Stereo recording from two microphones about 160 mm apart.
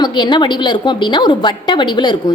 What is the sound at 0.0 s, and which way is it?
A woman's voice, 25° left (ahead or behind).